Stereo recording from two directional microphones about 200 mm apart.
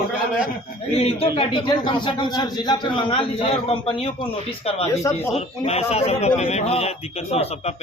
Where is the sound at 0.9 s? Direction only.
30° left (ahead or behind).